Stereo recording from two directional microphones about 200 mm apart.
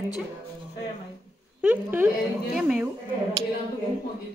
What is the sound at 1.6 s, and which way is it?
A woman's voice, 10° right (ahead or behind).